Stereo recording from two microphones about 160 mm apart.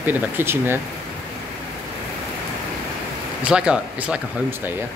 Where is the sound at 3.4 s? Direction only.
5° right (ahead or behind).